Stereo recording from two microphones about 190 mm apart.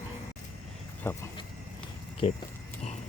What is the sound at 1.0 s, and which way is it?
Speech, 15° left (ahead or behind).